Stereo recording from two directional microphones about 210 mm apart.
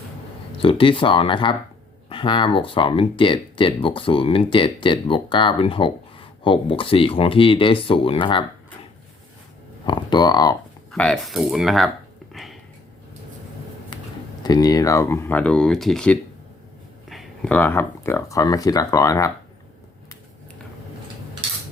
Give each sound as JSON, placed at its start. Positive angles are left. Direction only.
{"t": 0.6, "sound": "speech", "side_deg": 25}
{"t": 9.8, "sound": "speech", "side_deg": 20}
{"t": 10.9, "sound": "speech", "side_deg": 5}
{"t": 12.3, "sound": "a sound", "side_deg": 0}
{"t": 13.9, "sound": "a sound", "side_deg": 20}
{"t": 14.4, "sound": "speech", "side_deg": 20}